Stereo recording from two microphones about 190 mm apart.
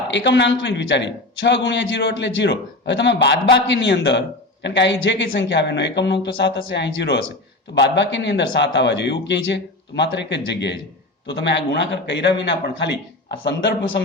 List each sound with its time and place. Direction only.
0.1 s a man's voice: 70° left (ahead or behind)